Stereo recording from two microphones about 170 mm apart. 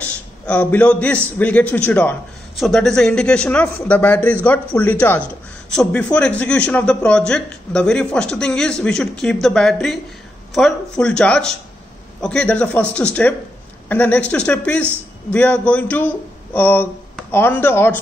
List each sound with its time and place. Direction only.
0.5 s a man's voice: 10° left (ahead or behind)